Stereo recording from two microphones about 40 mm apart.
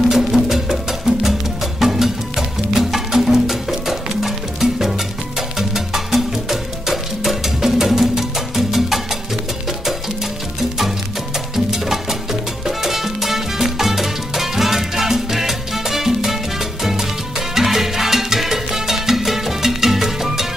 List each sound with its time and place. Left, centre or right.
0.1 s music: centre
11.5 s music: centre
17.6 s salsa music: centre